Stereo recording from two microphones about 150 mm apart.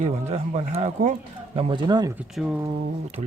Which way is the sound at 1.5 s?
35° right (ahead or behind).